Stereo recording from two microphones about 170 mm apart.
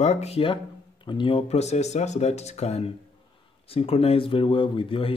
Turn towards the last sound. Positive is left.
turn(degrees=30)  # may be behind; listen again after turning